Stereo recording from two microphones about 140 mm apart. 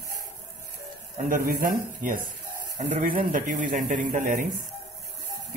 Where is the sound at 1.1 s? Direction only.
80° right.